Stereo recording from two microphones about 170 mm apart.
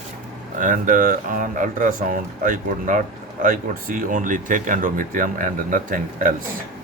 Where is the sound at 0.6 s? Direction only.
50° right (ahead or behind).